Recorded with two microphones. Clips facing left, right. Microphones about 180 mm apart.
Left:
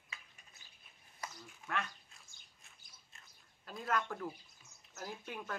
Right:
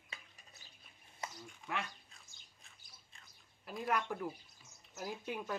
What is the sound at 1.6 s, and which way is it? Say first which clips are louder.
Speech: left 1 dB; 10° right (ahead or behind).